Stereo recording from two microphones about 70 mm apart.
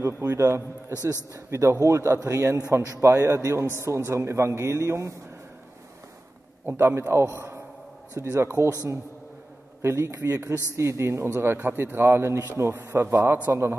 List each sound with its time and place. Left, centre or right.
0.0 s speech: right
0.5 s a man's voice: right
6.6 s a man's voice: right
9.8 s a man's voice: right